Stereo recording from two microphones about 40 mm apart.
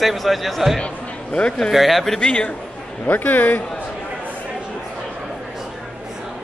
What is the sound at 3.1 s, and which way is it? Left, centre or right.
Speech, left.